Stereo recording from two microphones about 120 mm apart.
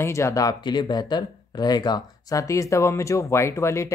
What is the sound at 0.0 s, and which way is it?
Speech, 25° left (ahead or behind).